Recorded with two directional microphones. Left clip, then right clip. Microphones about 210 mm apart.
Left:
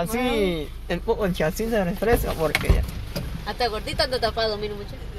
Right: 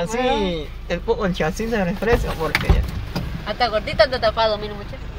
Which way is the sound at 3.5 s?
35° left (ahead or behind).